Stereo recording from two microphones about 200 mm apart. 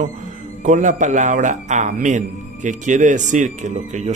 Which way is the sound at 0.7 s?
40° right (ahead or behind).